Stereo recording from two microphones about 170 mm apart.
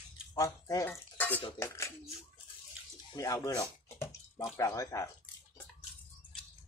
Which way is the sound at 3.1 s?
20° left (ahead or behind).